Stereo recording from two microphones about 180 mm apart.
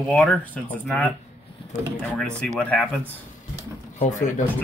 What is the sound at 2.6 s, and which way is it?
Speech, 10° left (ahead or behind).